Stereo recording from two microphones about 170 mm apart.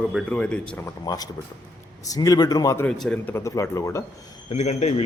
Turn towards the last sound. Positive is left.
turn(degrees=40)  # may be behind; listen again after turning